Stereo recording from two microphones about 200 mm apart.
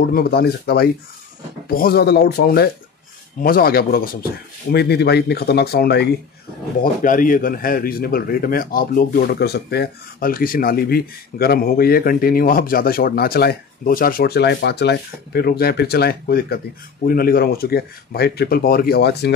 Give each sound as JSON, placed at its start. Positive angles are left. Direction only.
{"t": 0.1, "sound": "speech", "side_deg": 50}
{"t": 6.8, "sound": "speech", "side_deg": 45}